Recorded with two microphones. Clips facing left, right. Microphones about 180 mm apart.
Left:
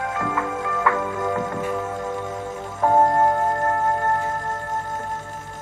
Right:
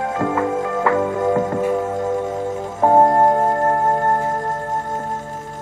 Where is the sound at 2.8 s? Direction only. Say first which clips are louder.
Right 4 dB; 30° right (ahead or behind).